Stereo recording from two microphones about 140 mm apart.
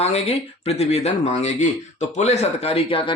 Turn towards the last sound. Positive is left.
turn(degrees=40)  # may be behind; listen again after turning